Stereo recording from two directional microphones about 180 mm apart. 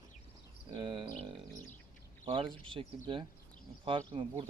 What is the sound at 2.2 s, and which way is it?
Speech, 30° right (ahead or behind).